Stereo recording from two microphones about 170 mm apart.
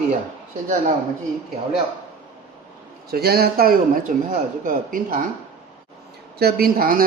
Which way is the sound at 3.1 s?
65° right (ahead or behind).